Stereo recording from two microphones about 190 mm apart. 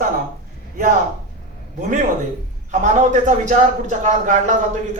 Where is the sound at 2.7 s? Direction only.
40° right (ahead or behind).